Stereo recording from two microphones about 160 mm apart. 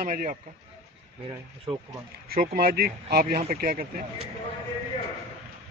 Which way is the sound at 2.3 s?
70° right (ahead or behind).